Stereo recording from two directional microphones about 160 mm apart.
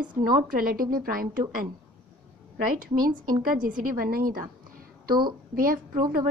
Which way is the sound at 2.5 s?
60° right (ahead or behind).